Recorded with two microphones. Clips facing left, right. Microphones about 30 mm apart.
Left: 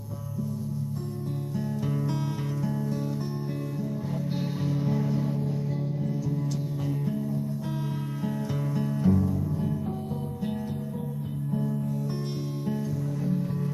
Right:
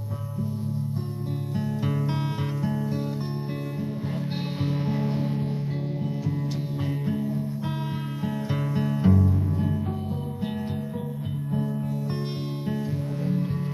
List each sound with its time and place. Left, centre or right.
1.9 s music: right
4.6 s music: right
8.7 s music: right
13.2 s music: right